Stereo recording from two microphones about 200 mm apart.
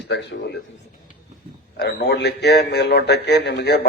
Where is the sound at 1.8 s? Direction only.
55° left (ahead or behind).